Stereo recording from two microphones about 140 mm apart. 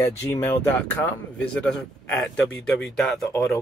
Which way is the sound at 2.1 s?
5° left (ahead or behind).